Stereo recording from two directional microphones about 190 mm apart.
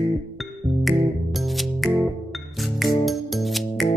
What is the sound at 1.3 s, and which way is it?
Music, centre (ahead or behind).